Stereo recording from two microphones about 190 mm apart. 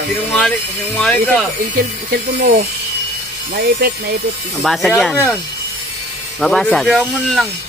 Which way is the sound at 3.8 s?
55° right (ahead or behind).